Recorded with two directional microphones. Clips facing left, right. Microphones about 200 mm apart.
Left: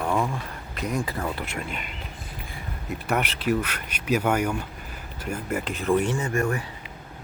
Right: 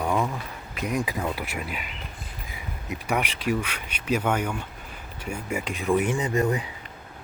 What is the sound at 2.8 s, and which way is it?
Speech, centre (ahead or behind).